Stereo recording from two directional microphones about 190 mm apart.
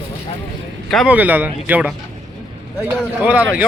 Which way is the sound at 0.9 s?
Centre (ahead or behind).